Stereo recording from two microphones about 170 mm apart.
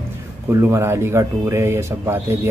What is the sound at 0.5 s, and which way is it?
Speech, 15° right (ahead or behind).